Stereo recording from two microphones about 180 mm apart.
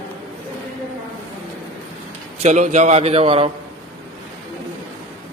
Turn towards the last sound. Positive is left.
turn(degrees=-30)  # may be behind; listen again after turning